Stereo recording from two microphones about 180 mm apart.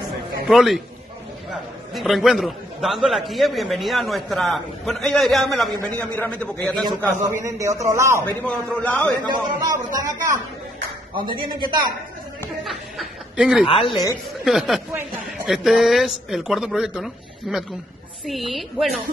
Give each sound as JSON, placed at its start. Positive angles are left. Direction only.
{"t": 0.5, "sound": "a man's voice", "side_deg": 0}
{"t": 7.4, "sound": "a man's voice", "side_deg": -15}
{"t": 8.3, "sound": "a man's voice", "side_deg": 10}
{"t": 9.2, "sound": "a man's voice", "side_deg": -20}
{"t": 11.1, "sound": "a man's voice", "side_deg": -25}
{"t": 12.6, "sound": "snicker", "side_deg": 0}
{"t": 13.7, "sound": "a woman's voice", "side_deg": 30}
{"t": 14.4, "sound": "a man's voice", "side_deg": 0}